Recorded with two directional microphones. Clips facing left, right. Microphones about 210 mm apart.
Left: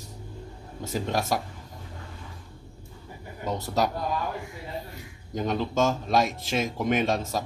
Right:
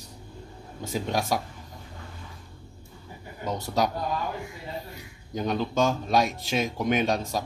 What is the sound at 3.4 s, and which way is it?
Speech, centre (ahead or behind).